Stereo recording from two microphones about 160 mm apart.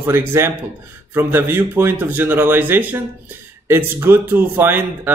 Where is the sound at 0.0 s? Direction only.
15° right (ahead or behind).